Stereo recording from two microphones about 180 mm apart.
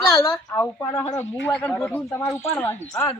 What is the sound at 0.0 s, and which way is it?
Speech, 20° left (ahead or behind).